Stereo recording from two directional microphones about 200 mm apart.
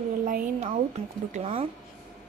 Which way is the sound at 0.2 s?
40° right (ahead or behind).